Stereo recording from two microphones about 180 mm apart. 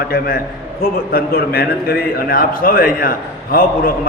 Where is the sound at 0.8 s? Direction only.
55° left (ahead or behind).